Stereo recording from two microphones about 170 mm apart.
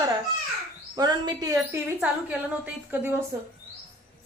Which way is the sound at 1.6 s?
5° right (ahead or behind).